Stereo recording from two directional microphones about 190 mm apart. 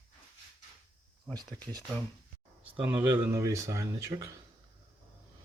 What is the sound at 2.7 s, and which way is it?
Speech, 10° right (ahead or behind).